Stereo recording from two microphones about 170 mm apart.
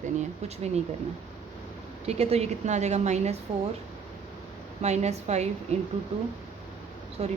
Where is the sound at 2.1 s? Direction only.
35° right (ahead or behind).